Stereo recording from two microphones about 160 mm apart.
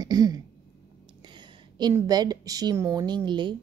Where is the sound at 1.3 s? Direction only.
25° right (ahead or behind).